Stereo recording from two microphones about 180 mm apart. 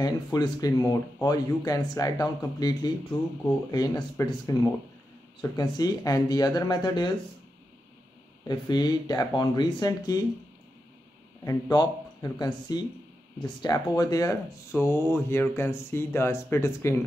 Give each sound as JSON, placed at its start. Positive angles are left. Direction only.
{"t": 0.0, "sound": "speech", "side_deg": 20}
{"t": 8.5, "sound": "speech", "side_deg": 25}
{"t": 11.4, "sound": "speech", "side_deg": 20}